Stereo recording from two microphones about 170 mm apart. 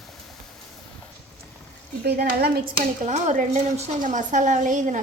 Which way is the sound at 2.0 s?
65° right (ahead or behind).